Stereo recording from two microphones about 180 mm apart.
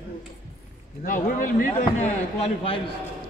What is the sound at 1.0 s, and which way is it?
Speech, 45° left (ahead or behind).